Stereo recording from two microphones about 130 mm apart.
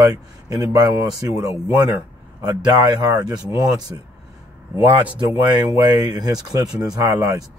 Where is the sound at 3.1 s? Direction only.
30° right (ahead or behind).